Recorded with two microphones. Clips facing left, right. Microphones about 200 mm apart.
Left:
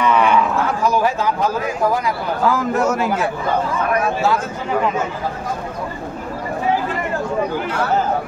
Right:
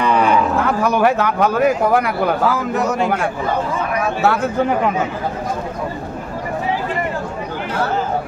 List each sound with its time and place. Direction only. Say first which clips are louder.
0.0 s a sound: even; 35° right (ahead or behind)
0.8 s speech: right 2 dB; 65° right (ahead or behind)
2.7 s a man's voice: even; centre (ahead or behind)
4.2 s speech: right 3 dB; 60° right (ahead or behind)